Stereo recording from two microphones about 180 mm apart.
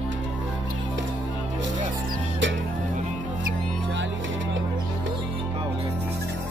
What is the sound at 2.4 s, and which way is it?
Music, 90° right.